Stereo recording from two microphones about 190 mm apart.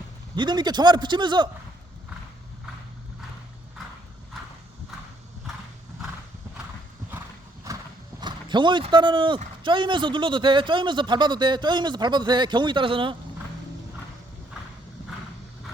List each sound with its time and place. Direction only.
0.3 s speech: 25° right (ahead or behind)
8.2 s speech: 25° right (ahead or behind)